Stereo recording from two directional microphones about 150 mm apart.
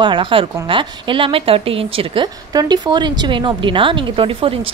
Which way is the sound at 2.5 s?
25° right (ahead or behind).